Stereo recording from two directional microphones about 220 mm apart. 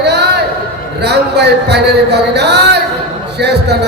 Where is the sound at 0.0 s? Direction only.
50° right (ahead or behind).